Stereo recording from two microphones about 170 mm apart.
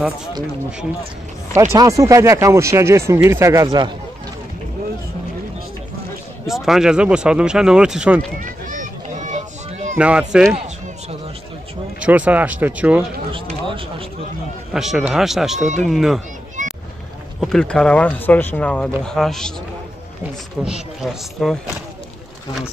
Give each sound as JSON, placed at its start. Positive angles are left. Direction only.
{"t": 1.5, "sound": "speech", "side_deg": -15}
{"t": 6.4, "sound": "speech", "side_deg": 0}
{"t": 8.4, "sound": "a sound", "side_deg": -50}
{"t": 9.9, "sound": "speech", "side_deg": -5}
{"t": 12.0, "sound": "speech", "side_deg": -10}
{"t": 13.3, "sound": "run", "side_deg": -30}
{"t": 14.7, "sound": "speech", "side_deg": 0}
{"t": 16.6, "sound": "vehicle", "side_deg": -50}
{"t": 17.4, "sound": "speech", "side_deg": 5}
{"t": 20.6, "sound": "speech", "side_deg": -5}